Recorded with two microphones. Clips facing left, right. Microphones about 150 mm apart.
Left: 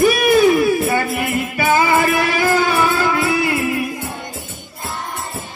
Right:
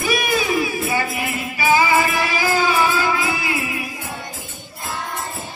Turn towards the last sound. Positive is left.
turn(degrees=55)  # may be behind; listen again after turning